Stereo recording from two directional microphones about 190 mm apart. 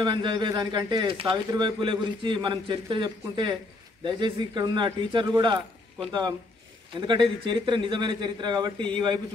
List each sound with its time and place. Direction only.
0.0 s a man's voice: 25° right (ahead or behind)
7.0 s a man's voice: 25° right (ahead or behind)